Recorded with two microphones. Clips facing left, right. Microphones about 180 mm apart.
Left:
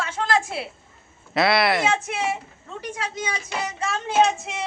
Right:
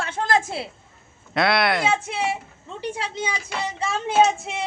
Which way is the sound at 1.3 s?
Centre (ahead or behind).